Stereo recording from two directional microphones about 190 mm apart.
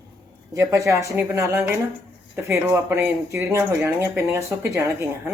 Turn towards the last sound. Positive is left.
turn(degrees=-15)  # may be behind; listen again after turning